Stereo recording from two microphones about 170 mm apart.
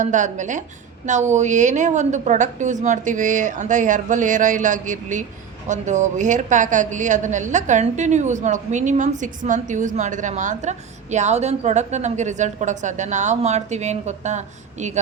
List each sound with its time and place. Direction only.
0.0 s a woman's voice: 45° right (ahead or behind)